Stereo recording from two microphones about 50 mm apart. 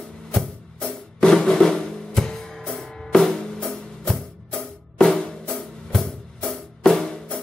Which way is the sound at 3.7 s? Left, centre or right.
Centre.